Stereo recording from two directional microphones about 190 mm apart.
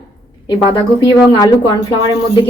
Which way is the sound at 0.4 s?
25° left (ahead or behind).